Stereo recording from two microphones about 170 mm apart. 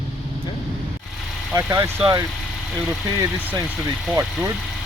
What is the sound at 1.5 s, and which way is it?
Speech, 20° right (ahead or behind).